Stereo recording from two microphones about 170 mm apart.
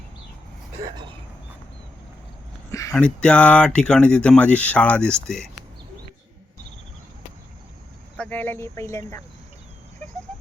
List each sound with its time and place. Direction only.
2.7 s speech: 20° left (ahead or behind)
3.0 s speech: 5° left (ahead or behind)
8.1 s speech: 10° left (ahead or behind)